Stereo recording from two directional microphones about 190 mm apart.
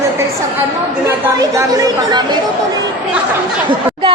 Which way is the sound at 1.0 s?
15° right (ahead or behind).